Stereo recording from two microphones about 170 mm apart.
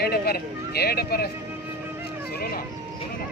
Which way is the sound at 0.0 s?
65° left (ahead or behind).